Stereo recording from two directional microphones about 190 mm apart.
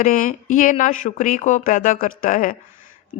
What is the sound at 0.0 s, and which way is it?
Speech, 45° left (ahead or behind).